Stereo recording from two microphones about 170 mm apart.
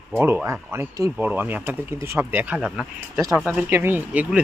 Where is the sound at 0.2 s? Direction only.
15° right (ahead or behind).